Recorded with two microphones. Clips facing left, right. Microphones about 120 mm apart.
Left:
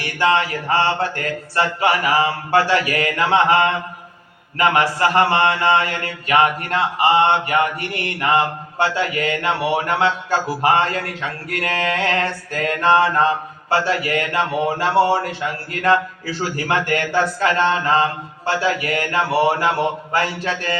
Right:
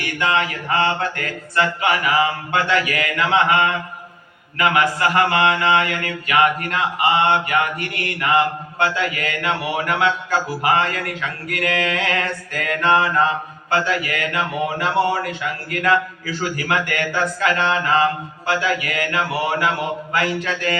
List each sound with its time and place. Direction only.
0.0 s speech: 35° left (ahead or behind)